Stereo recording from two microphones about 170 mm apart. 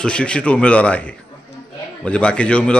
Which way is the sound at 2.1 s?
5° left (ahead or behind).